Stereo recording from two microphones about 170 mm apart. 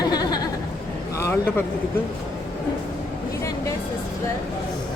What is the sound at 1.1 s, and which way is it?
Speech, 15° left (ahead or behind).